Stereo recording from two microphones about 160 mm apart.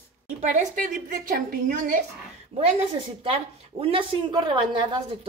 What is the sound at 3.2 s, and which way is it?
Speech, 35° right (ahead or behind).